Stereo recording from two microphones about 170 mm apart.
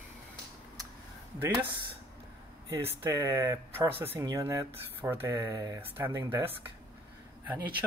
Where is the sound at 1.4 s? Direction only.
10° right (ahead or behind).